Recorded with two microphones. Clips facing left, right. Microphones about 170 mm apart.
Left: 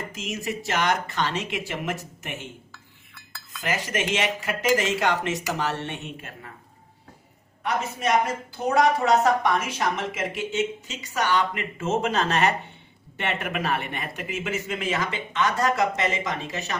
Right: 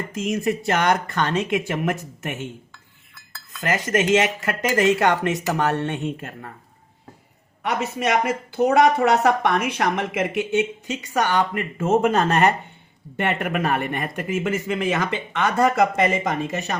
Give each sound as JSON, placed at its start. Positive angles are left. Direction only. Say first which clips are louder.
{"t": 0.2, "sound": "speech", "louder": "right 9 dB", "side_deg": -55}
{"t": 3.6, "sound": "speech", "louder": "right 6 dB", "side_deg": -60}
{"t": 7.6, "sound": "speech", "louder": "right 3 dB", "side_deg": -65}